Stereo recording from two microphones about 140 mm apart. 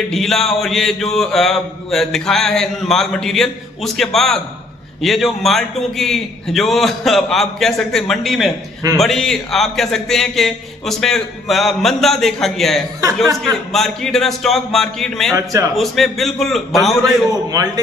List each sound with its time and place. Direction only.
0.1 s mantra: 5° left (ahead or behind)
13.0 s speech: 25° right (ahead or behind)
13.7 s mantra: 5° left (ahead or behind)